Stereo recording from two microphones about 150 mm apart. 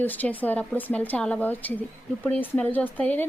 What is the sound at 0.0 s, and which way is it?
Speech, 10° left (ahead or behind).